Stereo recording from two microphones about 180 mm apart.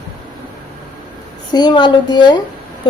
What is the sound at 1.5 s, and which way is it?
Speech, 25° left (ahead or behind).